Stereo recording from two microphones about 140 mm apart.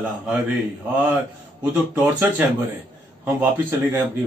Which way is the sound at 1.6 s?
15° right (ahead or behind).